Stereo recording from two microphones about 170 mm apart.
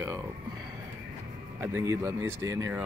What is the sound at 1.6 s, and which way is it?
Speech, 15° right (ahead or behind).